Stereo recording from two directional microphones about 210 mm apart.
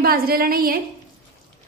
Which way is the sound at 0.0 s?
45° right (ahead or behind).